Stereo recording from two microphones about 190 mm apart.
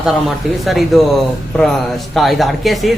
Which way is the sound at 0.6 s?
Centre (ahead or behind).